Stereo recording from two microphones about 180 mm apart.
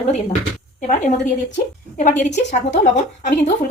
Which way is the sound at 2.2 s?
40° left (ahead or behind).